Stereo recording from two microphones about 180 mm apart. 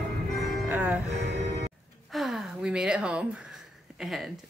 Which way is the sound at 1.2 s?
70° right (ahead or behind).